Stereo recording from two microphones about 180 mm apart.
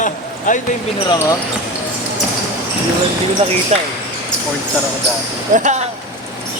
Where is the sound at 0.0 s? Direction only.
45° left (ahead or behind).